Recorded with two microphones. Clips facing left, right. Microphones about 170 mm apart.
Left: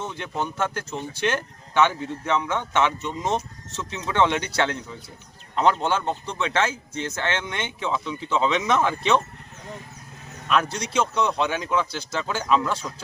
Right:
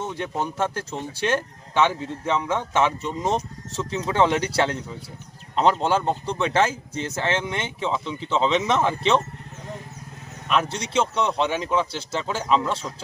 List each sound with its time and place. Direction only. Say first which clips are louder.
0.0 s speech: right 2 dB; 35° right (ahead or behind)
10.5 s speech: even; 25° right (ahead or behind)